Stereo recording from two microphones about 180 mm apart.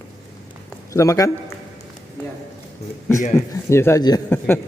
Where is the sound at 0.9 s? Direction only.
15° left (ahead or behind).